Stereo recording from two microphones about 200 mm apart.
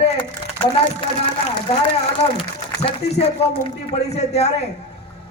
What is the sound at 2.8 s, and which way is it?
Speech, 30° left (ahead or behind).